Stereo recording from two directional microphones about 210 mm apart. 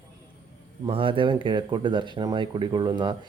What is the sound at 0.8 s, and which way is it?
Speech, 25° right (ahead or behind).